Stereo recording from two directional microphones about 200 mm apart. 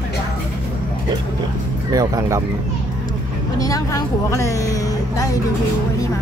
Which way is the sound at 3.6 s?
15° left (ahead or behind).